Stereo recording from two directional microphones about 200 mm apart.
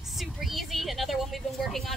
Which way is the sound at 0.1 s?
Centre (ahead or behind).